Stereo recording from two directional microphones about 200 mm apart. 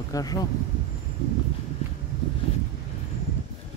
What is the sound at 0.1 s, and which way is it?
Speech, 20° left (ahead or behind).